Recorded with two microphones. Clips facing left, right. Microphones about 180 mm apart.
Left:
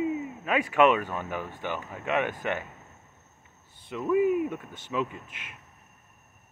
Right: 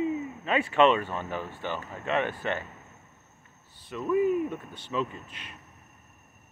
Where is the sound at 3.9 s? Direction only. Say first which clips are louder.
Left 1 dB; 15° left (ahead or behind).